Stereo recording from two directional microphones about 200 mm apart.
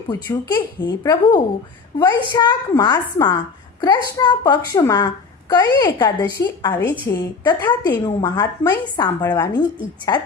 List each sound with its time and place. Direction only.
0.1 s a woman's voice: 20° left (ahead or behind)